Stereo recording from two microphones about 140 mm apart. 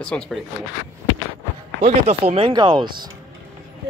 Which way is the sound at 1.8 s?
45° right (ahead or behind).